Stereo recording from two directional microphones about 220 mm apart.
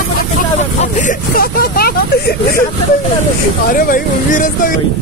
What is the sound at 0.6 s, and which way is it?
Speech, 35° left (ahead or behind).